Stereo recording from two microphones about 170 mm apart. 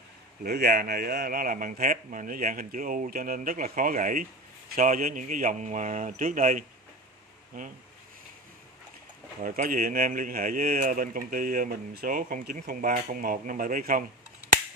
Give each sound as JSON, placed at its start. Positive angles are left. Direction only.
{"t": 0.4, "sound": "speech", "side_deg": -70}
{"t": 9.4, "sound": "speech", "side_deg": -55}